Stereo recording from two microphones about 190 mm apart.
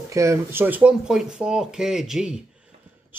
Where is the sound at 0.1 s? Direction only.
15° right (ahead or behind).